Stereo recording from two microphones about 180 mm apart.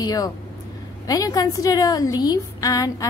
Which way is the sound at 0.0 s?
20° left (ahead or behind).